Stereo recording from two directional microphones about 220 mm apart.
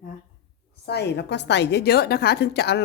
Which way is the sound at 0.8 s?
50° left (ahead or behind).